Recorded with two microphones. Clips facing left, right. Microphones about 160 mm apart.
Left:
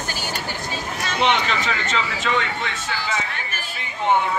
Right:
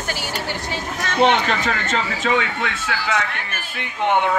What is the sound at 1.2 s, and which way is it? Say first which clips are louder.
Speech: right 4 dB; 45° right (ahead or behind).